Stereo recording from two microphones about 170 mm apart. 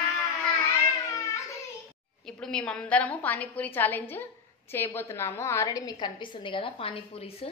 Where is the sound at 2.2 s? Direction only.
5° left (ahead or behind); by 7.3 s 35° left (ahead or behind).